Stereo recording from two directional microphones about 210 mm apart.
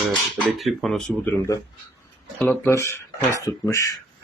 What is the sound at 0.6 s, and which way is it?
Speech, centre (ahead or behind).